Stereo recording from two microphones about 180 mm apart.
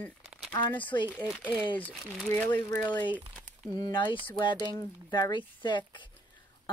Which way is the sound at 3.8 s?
25° left (ahead or behind).